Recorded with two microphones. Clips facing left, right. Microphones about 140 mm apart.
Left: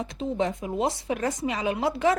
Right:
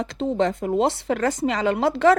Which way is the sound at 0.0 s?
80° right.